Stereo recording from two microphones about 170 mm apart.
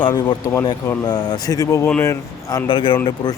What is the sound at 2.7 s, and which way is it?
Speech, 30° left (ahead or behind).